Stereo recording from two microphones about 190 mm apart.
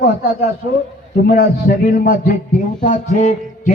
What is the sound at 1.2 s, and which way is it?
A man's voice, 50° left (ahead or behind).